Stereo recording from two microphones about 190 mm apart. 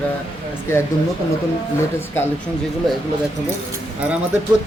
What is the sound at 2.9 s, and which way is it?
Speech, centre (ahead or behind).